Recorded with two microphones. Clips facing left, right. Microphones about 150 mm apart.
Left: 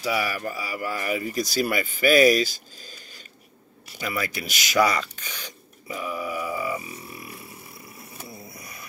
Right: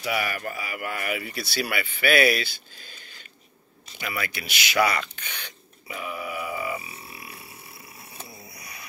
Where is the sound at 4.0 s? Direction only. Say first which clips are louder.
Left 3 dB; 40° left (ahead or behind).